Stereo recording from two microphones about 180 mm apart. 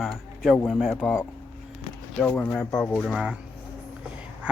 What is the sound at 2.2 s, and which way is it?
Speech, 10° left (ahead or behind).